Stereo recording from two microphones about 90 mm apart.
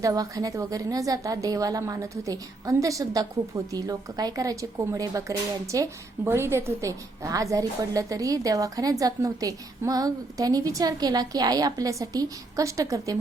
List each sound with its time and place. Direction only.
0.0 s a woman's voice: 40° right (ahead or behind)